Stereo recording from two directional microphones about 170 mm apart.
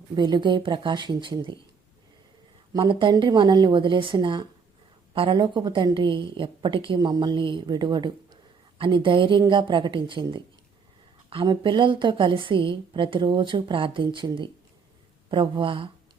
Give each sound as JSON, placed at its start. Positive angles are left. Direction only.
{"t": 0.2, "sound": "a woman's voice", "side_deg": -25}
{"t": 2.7, "sound": "a woman's voice", "side_deg": -30}